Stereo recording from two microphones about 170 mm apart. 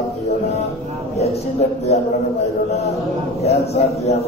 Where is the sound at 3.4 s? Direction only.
40° left (ahead or behind).